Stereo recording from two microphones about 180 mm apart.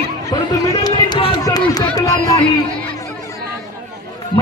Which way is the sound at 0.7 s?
20° left (ahead or behind).